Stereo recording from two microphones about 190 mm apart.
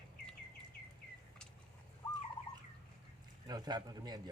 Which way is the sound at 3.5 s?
20° right (ahead or behind).